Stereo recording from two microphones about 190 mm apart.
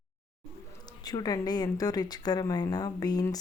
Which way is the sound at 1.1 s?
20° left (ahead or behind).